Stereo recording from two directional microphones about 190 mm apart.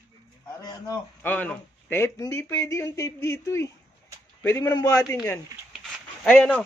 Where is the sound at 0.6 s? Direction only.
20° left (ahead or behind).